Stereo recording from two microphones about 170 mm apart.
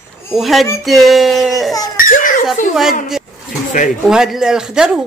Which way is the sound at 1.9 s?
55° left (ahead or behind).